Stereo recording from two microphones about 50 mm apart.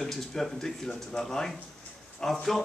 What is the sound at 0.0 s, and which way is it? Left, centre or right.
Speech, centre.